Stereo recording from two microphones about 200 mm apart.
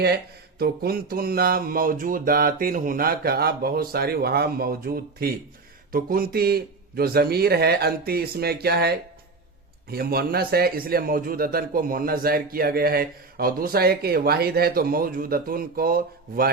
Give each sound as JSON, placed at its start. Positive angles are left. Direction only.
{"t": 0.6, "sound": "a man's voice", "side_deg": -50}